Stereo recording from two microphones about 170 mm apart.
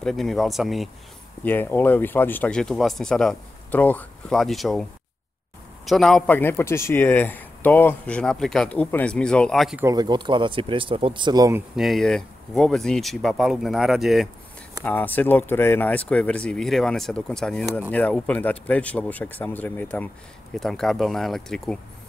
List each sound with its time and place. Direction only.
0.0 s speech: centre (ahead or behind)
1.4 s a man's voice: 10° left (ahead or behind)
5.9 s a man's voice: centre (ahead or behind)
9.8 s speech: 20° right (ahead or behind)
11.7 s speech: centre (ahead or behind)
14.9 s a man's voice: 10° left (ahead or behind)